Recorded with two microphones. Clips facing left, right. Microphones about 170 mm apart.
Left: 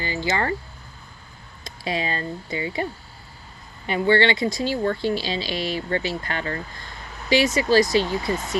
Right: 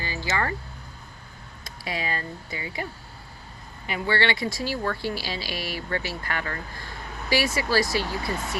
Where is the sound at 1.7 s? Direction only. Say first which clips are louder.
Left 4 dB; 25° left (ahead or behind).